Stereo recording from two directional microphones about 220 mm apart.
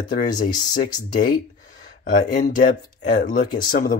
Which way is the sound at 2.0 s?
35° left (ahead or behind).